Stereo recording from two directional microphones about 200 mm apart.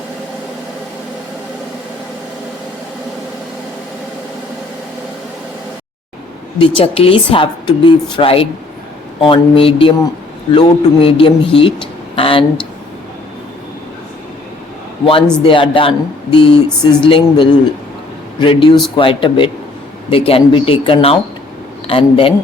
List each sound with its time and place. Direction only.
6.6 s a woman's voice: 25° left (ahead or behind)
15.0 s a woman's voice: 25° left (ahead or behind)